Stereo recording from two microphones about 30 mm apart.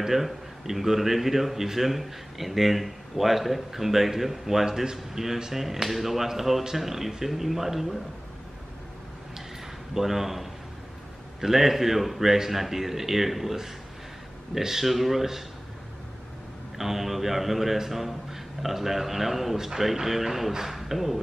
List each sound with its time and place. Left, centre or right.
0.0 s a man's voice: centre
4.6 s a man's voice: right
9.9 s a man's voice: centre
16.7 s a man's voice: centre